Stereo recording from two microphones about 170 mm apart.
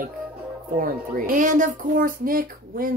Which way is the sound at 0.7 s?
55° right (ahead or behind).